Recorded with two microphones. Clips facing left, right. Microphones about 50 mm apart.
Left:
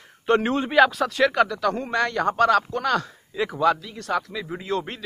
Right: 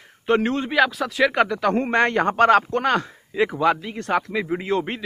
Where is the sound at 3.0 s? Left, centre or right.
Right.